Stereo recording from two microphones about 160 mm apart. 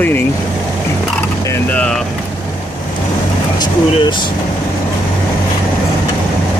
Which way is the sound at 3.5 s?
25° left (ahead or behind).